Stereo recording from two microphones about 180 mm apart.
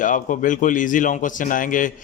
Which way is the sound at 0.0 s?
45° left (ahead or behind).